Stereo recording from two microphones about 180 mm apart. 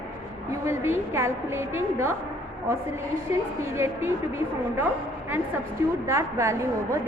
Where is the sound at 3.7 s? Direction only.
15° right (ahead or behind).